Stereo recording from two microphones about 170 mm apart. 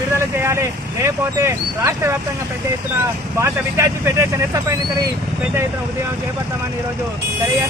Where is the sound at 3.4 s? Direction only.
15° right (ahead or behind).